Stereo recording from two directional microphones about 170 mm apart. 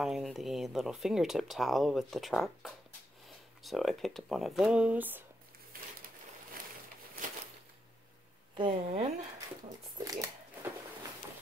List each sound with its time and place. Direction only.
0.0 s speech: centre (ahead or behind)
8.5 s speech: 35° right (ahead or behind)
9.9 s dog: 20° right (ahead or behind)